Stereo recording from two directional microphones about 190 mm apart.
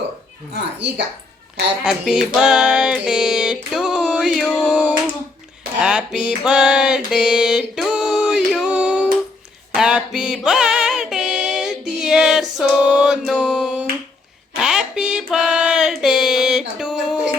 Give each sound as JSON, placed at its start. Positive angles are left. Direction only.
{"t": 0.5, "sound": "speech", "side_deg": -65}
{"t": 1.8, "sound": "music", "side_deg": -5}
{"t": 8.4, "sound": "a sound", "side_deg": -5}